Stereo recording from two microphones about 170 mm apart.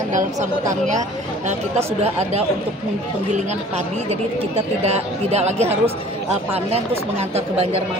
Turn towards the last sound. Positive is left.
turn(degrees=-40)  # may be behind; listen again after turning